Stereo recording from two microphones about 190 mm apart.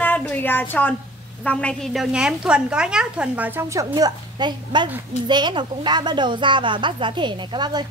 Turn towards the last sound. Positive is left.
turn(degrees=-25)  # may be behind; listen again after turning